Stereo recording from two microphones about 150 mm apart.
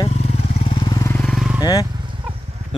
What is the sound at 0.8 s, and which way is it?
Vehicle, 25° left (ahead or behind).